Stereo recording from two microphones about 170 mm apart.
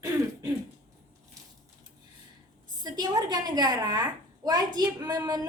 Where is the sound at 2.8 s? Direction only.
25° right (ahead or behind).